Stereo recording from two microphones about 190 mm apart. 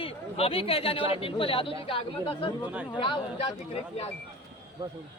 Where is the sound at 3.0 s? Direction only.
25° left (ahead or behind).